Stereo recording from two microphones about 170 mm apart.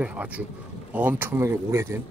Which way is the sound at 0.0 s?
10° right (ahead or behind).